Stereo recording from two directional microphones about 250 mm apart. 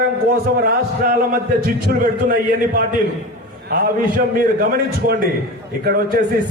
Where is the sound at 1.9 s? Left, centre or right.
Right.